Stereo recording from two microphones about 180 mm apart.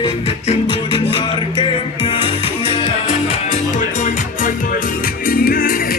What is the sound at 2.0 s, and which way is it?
Music, 30° left (ahead or behind).